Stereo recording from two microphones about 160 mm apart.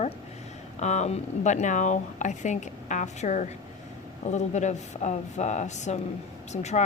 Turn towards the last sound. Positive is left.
turn(degrees=45)  # may be behind; listen again after turning